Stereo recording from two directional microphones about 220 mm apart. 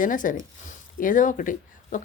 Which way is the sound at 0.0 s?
35° left (ahead or behind).